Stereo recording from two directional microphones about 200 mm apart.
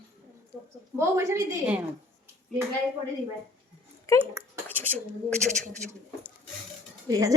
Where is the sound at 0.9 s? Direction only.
15° right (ahead or behind).